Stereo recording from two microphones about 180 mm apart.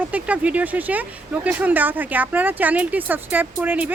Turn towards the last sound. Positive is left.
turn(degrees=-10)  # may be behind; listen again after turning